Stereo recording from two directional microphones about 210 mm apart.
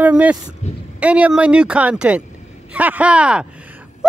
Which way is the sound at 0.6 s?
35° left (ahead or behind).